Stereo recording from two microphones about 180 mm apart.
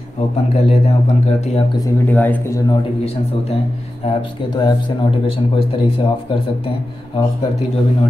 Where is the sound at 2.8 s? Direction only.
35° left (ahead or behind).